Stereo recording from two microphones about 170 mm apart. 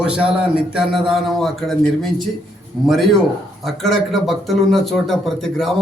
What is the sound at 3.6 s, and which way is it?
Speech, centre (ahead or behind).